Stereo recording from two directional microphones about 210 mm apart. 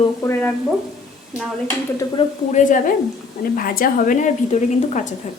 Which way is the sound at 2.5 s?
35° left (ahead or behind).